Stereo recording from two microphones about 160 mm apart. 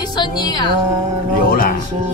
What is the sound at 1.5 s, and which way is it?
Speech, 65° left (ahead or behind).